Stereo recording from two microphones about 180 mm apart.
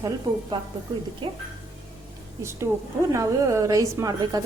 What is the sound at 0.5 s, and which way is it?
Speech, 25° right (ahead or behind).